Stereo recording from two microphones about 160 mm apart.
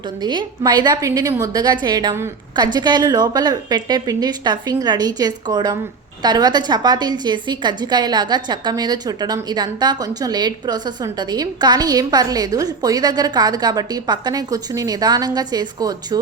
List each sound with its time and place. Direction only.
0.2 s a woman's voice: 25° right (ahead or behind)